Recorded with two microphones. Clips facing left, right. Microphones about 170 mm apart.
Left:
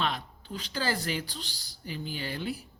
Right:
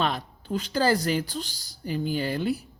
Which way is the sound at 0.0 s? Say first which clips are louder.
Right 5 dB; 45° right (ahead or behind).